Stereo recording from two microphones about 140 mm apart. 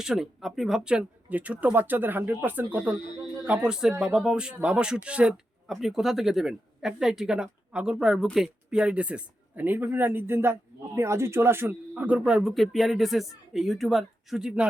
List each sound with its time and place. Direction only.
0.0 s speech: 5° right (ahead or behind)